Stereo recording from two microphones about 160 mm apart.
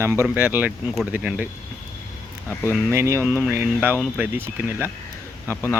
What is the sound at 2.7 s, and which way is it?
Speech, 15° right (ahead or behind).